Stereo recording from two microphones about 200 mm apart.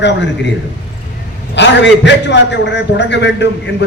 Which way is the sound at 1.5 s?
60° left (ahead or behind).